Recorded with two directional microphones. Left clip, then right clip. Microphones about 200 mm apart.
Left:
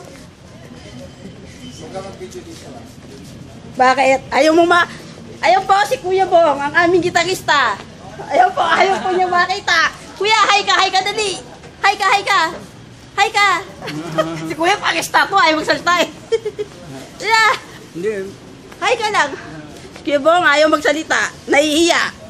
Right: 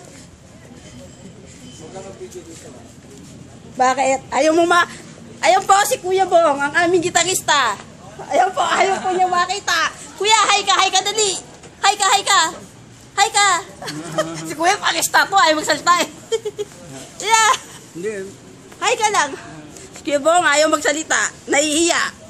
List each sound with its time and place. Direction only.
3.7 s a woman's voice: 5° right (ahead or behind)
5.4 s a woman's voice: 45° right (ahead or behind); by 16.3 s 25° right (ahead or behind)
17.2 s speech: 40° right (ahead or behind)
18.8 s speech: 35° right (ahead or behind)
20.1 s a woman's voice: 10° right (ahead or behind)